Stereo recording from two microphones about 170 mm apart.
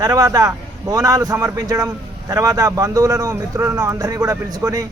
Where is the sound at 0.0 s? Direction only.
20° right (ahead or behind).